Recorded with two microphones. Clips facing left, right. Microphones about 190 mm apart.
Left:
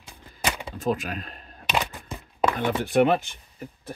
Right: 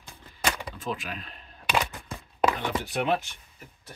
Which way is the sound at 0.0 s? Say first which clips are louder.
Left 1 dB; 10° left (ahead or behind).